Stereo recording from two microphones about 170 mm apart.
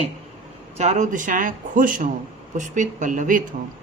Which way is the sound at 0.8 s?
45° right (ahead or behind).